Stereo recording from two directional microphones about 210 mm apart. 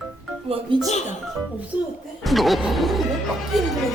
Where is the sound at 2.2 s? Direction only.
Centre (ahead or behind).